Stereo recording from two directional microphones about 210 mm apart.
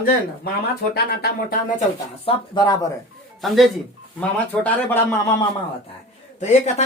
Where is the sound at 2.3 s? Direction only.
20° left (ahead or behind).